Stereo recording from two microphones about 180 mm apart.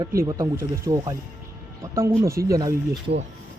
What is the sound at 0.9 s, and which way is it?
Speech, 20° right (ahead or behind).